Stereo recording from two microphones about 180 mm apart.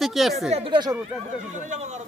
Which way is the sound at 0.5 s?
30° right (ahead or behind).